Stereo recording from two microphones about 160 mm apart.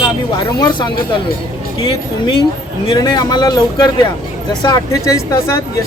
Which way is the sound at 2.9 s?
25° left (ahead or behind).